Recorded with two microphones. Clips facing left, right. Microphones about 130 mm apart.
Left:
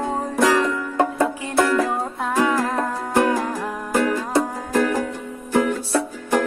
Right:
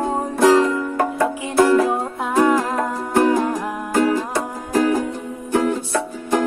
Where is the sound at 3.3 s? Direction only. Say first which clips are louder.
Right 4 dB; 20° right (ahead or behind).